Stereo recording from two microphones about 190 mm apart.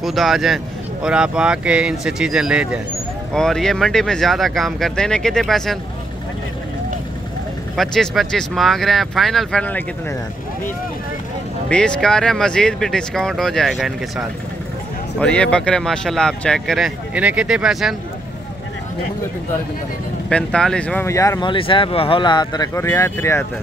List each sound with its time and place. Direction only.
0.0 s speech: centre (ahead or behind)
7.7 s speech: centre (ahead or behind)
11.7 s speech: 5° left (ahead or behind)
20.2 s speech: 5° left (ahead or behind)